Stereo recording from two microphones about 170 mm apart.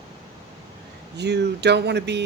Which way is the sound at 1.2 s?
80° right.